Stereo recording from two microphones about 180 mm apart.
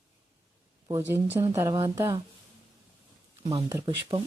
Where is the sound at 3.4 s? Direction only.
30° right (ahead or behind).